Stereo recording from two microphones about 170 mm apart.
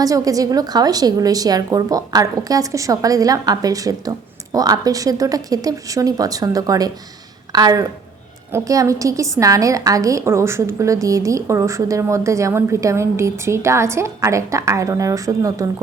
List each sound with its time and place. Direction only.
0.0 s a woman's voice: 20° right (ahead or behind)